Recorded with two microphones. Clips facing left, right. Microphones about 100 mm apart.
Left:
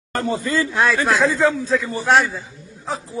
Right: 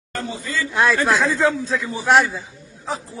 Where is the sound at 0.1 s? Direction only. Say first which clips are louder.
Left 6 dB; 50° left (ahead or behind).